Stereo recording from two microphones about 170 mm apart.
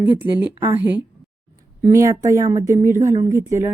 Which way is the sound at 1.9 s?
20° right (ahead or behind).